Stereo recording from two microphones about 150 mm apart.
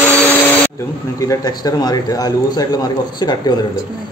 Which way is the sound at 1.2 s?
25° left (ahead or behind).